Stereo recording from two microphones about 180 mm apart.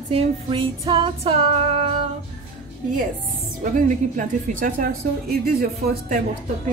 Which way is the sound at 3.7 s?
50° right (ahead or behind).